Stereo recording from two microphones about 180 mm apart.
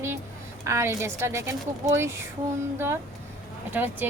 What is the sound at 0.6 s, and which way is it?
A woman's voice, 15° right (ahead or behind).